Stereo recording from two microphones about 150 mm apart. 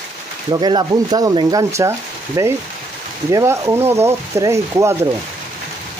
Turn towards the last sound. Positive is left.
turn(degrees=-20)  # may be behind; listen again after turning